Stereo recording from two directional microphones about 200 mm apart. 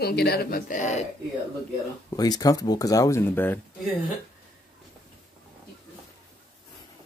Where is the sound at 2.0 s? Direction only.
20° left (ahead or behind).